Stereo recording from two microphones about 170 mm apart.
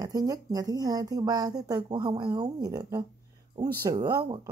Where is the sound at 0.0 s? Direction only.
20° right (ahead or behind).